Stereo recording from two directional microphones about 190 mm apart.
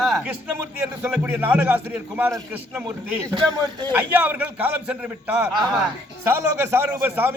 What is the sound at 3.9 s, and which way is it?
A man's voice, 10° right (ahead or behind).